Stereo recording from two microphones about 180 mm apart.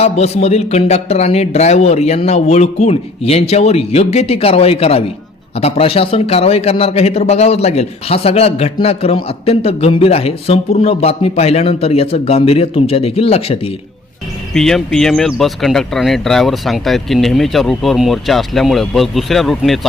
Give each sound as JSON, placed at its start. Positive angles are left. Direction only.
{"t": 0.0, "sound": "a man's voice", "side_deg": 35}
{"t": 14.5, "sound": "speech", "side_deg": 0}